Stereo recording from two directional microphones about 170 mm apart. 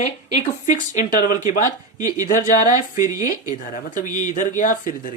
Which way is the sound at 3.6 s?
55° left (ahead or behind).